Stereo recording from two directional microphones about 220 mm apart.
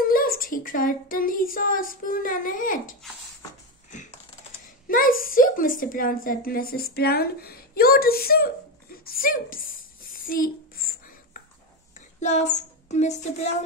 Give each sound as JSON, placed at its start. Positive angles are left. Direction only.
{"t": 0.0, "sound": "speech", "side_deg": 40}
{"t": 4.8, "sound": "a woman's voice", "side_deg": 40}
{"t": 8.9, "sound": "a sound", "side_deg": 40}
{"t": 12.2, "sound": "speech", "side_deg": 30}